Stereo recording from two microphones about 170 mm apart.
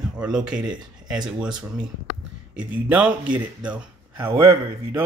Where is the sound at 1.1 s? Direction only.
5° right (ahead or behind).